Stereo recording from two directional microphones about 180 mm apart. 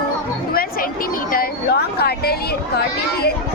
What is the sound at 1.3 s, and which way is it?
A woman's voice, 60° left (ahead or behind).